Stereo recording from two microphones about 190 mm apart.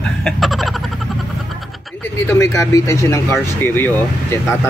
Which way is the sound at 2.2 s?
15° left (ahead or behind).